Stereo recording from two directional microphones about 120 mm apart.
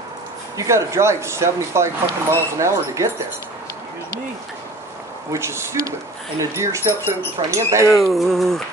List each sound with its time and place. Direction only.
0.6 s speech: 25° right (ahead or behind)
5.3 s speech: 20° right (ahead or behind)
7.9 s music: centre (ahead or behind)